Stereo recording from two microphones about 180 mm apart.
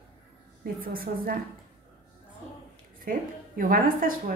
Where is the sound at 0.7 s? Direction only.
55° right (ahead or behind).